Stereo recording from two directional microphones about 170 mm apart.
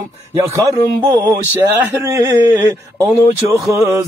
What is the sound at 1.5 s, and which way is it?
Speech, 15° right (ahead or behind).